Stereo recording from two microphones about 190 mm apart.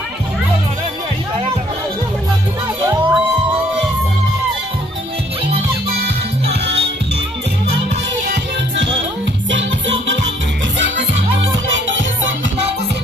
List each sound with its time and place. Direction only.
2.8 s crowd: 15° right (ahead or behind)
6.5 s music: 60° right (ahead or behind)
9.5 s music: 70° right (ahead or behind)
11.7 s music: 80° right